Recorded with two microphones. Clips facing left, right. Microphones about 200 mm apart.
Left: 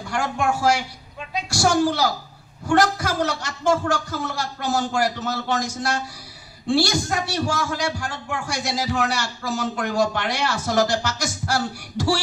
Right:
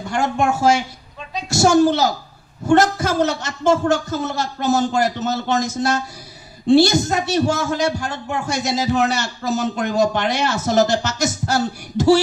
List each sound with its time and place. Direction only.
0.1 s speech: 25° right (ahead or behind)